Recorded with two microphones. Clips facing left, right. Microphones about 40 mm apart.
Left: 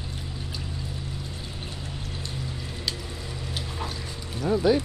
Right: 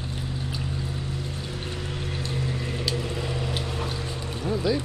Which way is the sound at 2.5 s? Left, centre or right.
Right.